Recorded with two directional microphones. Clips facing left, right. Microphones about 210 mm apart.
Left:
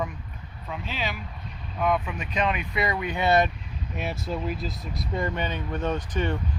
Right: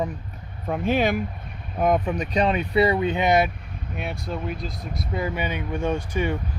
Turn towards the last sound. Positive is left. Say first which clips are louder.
# right 3 dB
turn(degrees=-10)  # may be behind; listen again after turning